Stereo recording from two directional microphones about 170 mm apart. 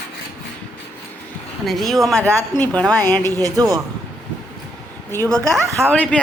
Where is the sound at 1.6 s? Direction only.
Centre (ahead or behind).